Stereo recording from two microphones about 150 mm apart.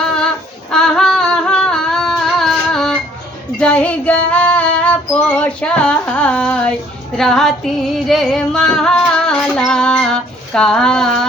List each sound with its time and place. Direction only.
0.0 s female singing: 5° left (ahead or behind)
0.7 s a sound: 5° left (ahead or behind)
3.6 s female singing: 10° left (ahead or behind)
5.4 s speech: 5° left (ahead or behind)
7.2 s female singing: centre (ahead or behind)
7.9 s music: centre (ahead or behind)